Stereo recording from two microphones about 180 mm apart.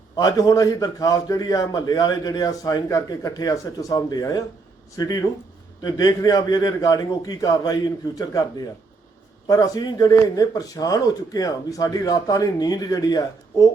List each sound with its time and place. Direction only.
0.2 s a man's voice: 20° left (ahead or behind)